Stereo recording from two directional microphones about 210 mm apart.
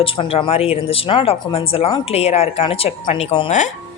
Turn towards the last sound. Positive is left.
turn(degrees=30)  # may be behind; listen again after turning